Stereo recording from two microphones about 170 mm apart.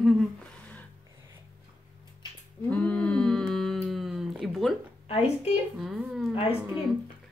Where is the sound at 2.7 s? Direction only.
5° left (ahead or behind).